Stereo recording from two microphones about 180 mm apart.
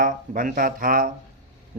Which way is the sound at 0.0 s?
50° right (ahead or behind).